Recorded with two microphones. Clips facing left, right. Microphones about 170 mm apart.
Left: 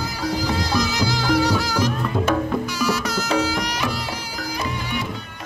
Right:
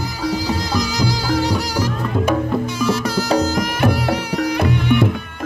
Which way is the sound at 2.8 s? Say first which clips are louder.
Right 4 dB; 30° right (ahead or behind).